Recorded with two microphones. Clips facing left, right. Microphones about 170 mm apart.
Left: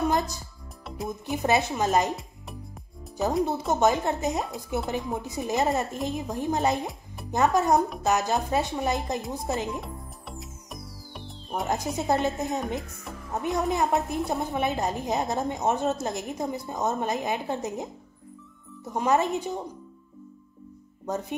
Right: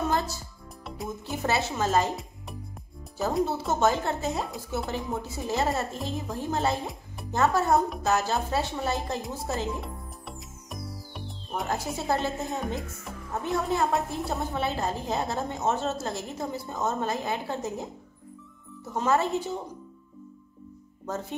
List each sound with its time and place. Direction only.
0.1 s music: 15° left (ahead or behind)
0.8 s music: centre (ahead or behind)
1.2 s a woman's voice: 15° left (ahead or behind)
2.1 s music: centre (ahead or behind)
3.8 s a woman's voice: 15° left (ahead or behind)
9.8 s music: centre (ahead or behind)
11.6 s a woman's voice: 20° left (ahead or behind)
18.9 s a woman's voice: 15° left (ahead or behind)
21.1 s a woman's voice: 15° left (ahead or behind)